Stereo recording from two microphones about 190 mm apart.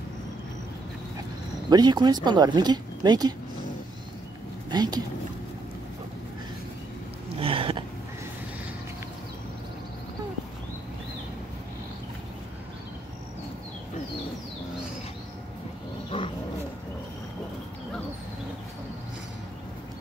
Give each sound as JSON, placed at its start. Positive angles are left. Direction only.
{"t": 1.7, "sound": "speech", "side_deg": -20}
{"t": 4.6, "sound": "speech", "side_deg": -20}
{"t": 7.3, "sound": "a sound", "side_deg": -30}